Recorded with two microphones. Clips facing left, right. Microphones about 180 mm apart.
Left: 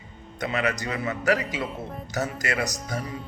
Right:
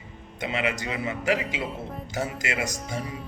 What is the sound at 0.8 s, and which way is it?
Speech, 25° right (ahead or behind).